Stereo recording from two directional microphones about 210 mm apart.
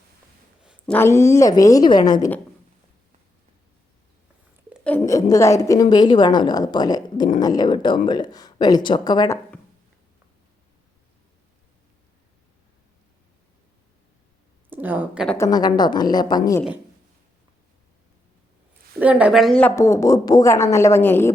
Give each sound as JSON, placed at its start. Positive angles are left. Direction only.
{"t": 0.6, "sound": "a sound", "side_deg": -5}
{"t": 0.9, "sound": "speech", "side_deg": 10}
{"t": 4.7, "sound": "a woman's voice", "side_deg": 5}
{"t": 14.7, "sound": "speech", "side_deg": -10}
{"t": 15.3, "sound": "speech", "side_deg": 15}
{"t": 18.9, "sound": "speech", "side_deg": -5}